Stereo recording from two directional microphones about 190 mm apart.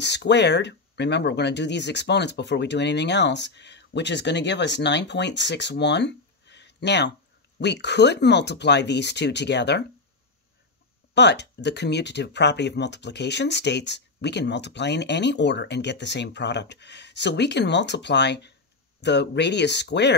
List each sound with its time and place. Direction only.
0.0 s speech: 65° left (ahead or behind)
11.1 s speech: 65° left (ahead or behind)